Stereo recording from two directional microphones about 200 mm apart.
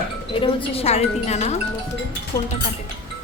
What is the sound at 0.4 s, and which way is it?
A woman's voice, 30° left (ahead or behind).